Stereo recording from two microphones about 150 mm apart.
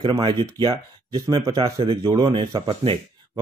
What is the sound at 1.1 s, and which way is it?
Speech, 20° right (ahead or behind).